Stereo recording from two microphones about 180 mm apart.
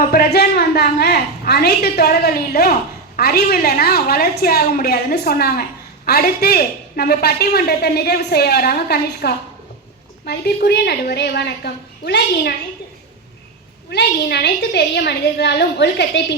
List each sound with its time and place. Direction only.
0.1 s a woman's voice: 60° left (ahead or behind)
13.9 s a woman's voice: 70° left (ahead or behind)